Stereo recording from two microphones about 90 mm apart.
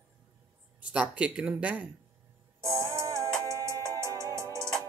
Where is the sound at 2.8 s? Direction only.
35° right (ahead or behind).